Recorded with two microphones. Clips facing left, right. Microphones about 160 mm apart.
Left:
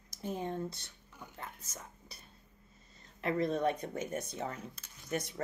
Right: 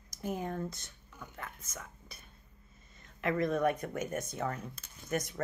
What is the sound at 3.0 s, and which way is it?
Speech, 30° left (ahead or behind).